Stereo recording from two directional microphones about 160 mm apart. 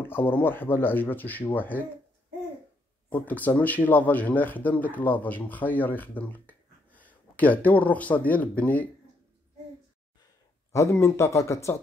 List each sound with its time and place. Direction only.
0.0 s speech: 10° left (ahead or behind)
3.1 s speech: 10° left (ahead or behind)
10.7 s speech: 20° left (ahead or behind)